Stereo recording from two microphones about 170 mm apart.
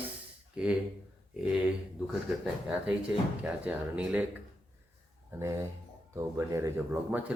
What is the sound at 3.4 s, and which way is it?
Speech, 10° right (ahead or behind).